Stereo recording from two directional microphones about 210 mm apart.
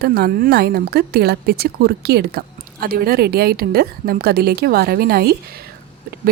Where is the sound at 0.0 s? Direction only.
50° right (ahead or behind).